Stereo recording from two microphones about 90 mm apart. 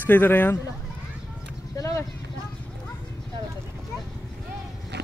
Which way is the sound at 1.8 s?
35° left (ahead or behind).